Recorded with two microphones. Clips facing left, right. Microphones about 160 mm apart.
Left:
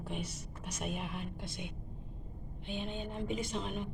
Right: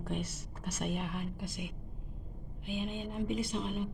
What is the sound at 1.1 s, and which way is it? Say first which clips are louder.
A woman's voice: right 3 dB; 10° right (ahead or behind).